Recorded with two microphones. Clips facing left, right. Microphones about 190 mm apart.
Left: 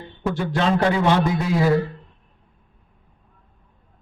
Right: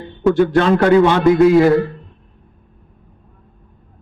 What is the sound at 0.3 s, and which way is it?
Speech, 60° right (ahead or behind).